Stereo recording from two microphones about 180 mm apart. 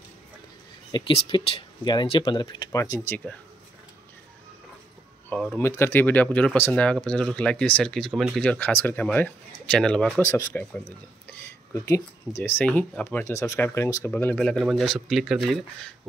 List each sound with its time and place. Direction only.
0.9 s speech: 30° left (ahead or behind); by 3.3 s 15° left (ahead or behind)
5.3 s speech: 5° left (ahead or behind)
10.2 s speech: 15° left (ahead or behind)
11.8 s speech: 15° left (ahead or behind)
14.1 s speech: 5° left (ahead or behind)